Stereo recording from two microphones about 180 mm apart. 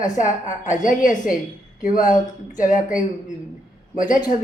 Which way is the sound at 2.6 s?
45° left (ahead or behind).